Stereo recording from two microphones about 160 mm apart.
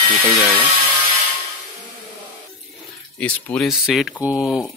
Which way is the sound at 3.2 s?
5° left (ahead or behind).